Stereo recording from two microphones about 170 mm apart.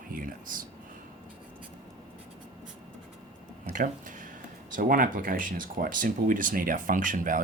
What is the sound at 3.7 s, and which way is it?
Speech, 50° right (ahead or behind).